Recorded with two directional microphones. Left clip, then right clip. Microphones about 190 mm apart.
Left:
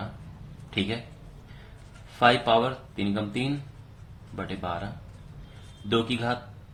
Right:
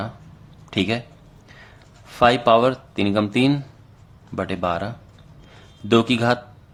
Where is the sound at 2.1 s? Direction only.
45° right (ahead or behind).